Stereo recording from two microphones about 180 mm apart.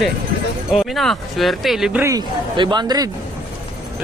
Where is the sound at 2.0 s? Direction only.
25° right (ahead or behind).